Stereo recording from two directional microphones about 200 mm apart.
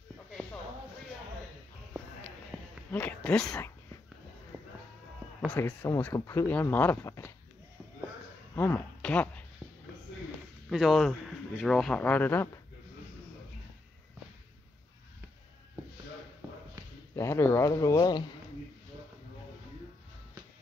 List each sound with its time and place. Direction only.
2.5 s a sound: centre (ahead or behind)
2.9 s speech: 10° left (ahead or behind)
4.5 s sheep: 5° right (ahead or behind)
5.5 s speech: 10° left (ahead or behind)
8.5 s speech: 10° left (ahead or behind)
10.7 s speech: centre (ahead or behind)
17.1 s speech: 15° left (ahead or behind)